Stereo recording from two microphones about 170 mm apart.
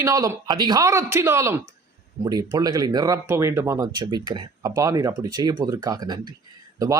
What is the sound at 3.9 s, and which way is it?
Speech, 25° right (ahead or behind).